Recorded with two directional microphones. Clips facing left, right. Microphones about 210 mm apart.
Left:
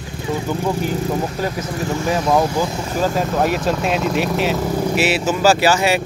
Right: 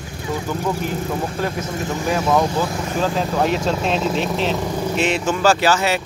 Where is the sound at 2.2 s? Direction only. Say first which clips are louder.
Left 1 dB; 10° left (ahead or behind).